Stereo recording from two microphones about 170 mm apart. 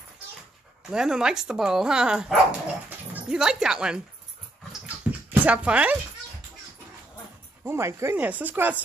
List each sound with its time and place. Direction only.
0.8 s speech: 5° right (ahead or behind)
4.8 s bathtub: 10° right (ahead or behind)
7.6 s speech: 15° right (ahead or behind)